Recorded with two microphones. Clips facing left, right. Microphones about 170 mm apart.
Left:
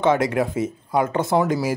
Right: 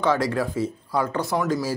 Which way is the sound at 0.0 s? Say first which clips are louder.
Left 3 dB; 20° left (ahead or behind).